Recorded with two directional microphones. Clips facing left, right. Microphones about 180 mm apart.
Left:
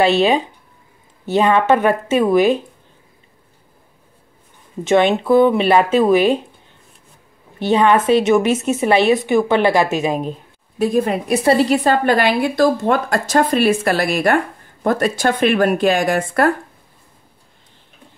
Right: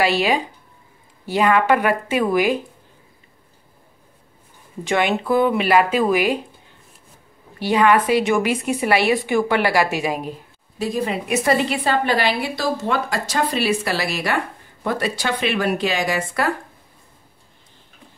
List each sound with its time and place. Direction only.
1.2 s speech: 25° left (ahead or behind)
4.8 s speech: 20° left (ahead or behind)
7.5 s speech: 25° left (ahead or behind)
10.8 s a woman's voice: 50° left (ahead or behind)
11.2 s a woman's voice: 35° left (ahead or behind); by 16.5 s 50° left (ahead or behind)